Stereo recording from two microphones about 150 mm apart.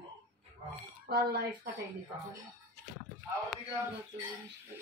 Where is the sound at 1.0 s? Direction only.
90° right.